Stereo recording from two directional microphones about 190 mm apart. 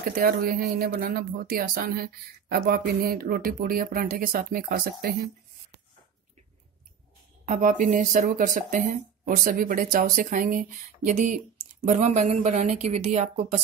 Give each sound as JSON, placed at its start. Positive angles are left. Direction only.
{"t": 0.1, "sound": "speech", "side_deg": -50}
{"t": 7.4, "sound": "speech", "side_deg": -45}